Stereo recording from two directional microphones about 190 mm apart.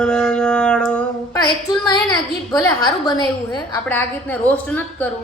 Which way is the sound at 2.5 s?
20° left (ahead or behind).